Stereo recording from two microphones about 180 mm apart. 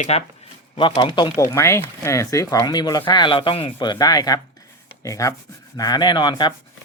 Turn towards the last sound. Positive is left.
turn(degrees=25)  # may be behind; listen again after turning